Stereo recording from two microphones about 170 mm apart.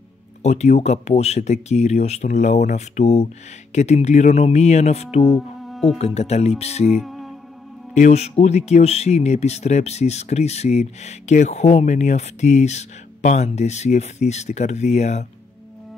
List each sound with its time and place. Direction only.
0.4 s speech: 40° left (ahead or behind)
5.7 s music: centre (ahead or behind)
5.9 s speech: 40° left (ahead or behind)
7.0 s music: centre (ahead or behind)
7.9 s speech: 40° left (ahead or behind)